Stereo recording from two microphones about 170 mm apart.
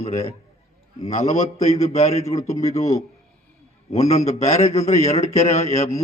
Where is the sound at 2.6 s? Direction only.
40° left (ahead or behind).